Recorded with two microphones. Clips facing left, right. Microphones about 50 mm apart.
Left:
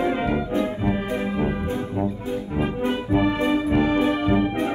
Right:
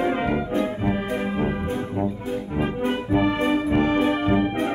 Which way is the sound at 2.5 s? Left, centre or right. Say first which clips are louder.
Even; centre.